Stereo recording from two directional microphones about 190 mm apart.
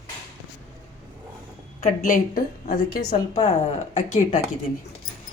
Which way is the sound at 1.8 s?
45° left (ahead or behind).